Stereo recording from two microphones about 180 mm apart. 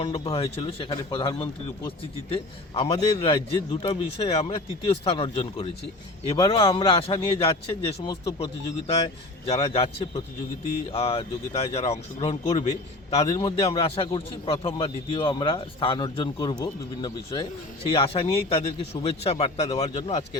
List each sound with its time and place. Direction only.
0.0 s a man's voice: 35° left (ahead or behind)
8.1 s speech: 20° left (ahead or behind)
9.5 s a man's voice: 35° left (ahead or behind)